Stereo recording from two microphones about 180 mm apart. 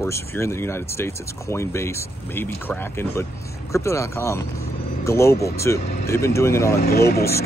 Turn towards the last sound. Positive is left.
turn(degrees=60)  # may be behind; listen again after turning